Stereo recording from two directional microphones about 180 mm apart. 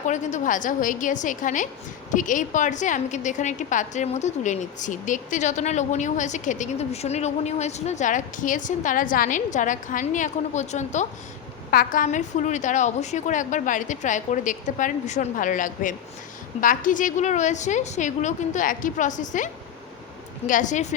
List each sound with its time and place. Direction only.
0.0 s a woman's voice: 40° left (ahead or behind)
11.7 s a woman's voice: 50° left (ahead or behind)
20.5 s a woman's voice: 45° left (ahead or behind)